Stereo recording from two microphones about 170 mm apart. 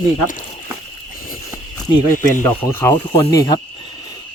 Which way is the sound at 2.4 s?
15° left (ahead or behind).